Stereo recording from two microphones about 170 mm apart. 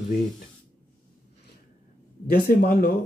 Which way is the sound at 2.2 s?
65° left (ahead or behind).